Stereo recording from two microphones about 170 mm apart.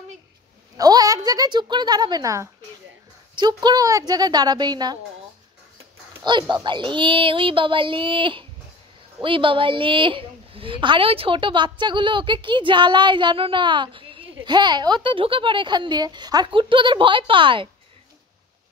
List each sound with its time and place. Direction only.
0.7 s a woman's voice: 20° right (ahead or behind)
6.2 s a woman's voice: 25° right (ahead or behind)